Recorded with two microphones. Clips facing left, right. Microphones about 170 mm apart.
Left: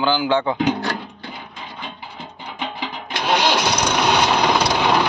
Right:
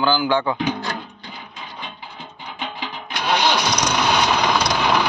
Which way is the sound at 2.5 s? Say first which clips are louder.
Left 2 dB; 25° left (ahead or behind).